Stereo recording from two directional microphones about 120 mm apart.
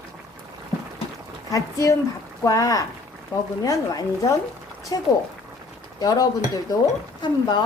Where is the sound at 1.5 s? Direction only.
25° left (ahead or behind).